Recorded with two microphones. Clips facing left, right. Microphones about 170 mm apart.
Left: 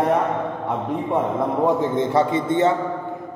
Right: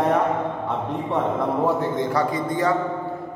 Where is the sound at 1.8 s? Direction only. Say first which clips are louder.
Left 3 dB; 25° left (ahead or behind).